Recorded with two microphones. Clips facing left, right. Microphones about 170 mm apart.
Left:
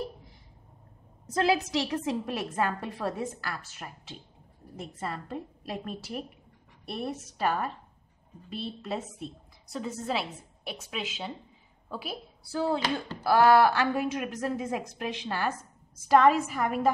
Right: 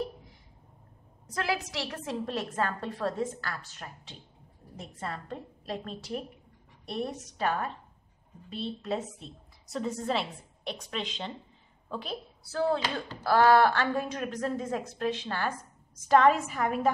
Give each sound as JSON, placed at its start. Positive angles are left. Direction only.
{"t": 1.3, "sound": "a woman's voice", "side_deg": 25}